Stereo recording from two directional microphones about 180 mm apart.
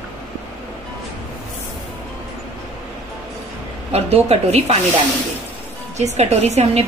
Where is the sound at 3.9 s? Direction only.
35° right (ahead or behind).